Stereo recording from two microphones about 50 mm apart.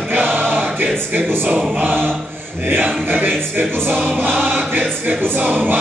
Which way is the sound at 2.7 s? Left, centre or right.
Right.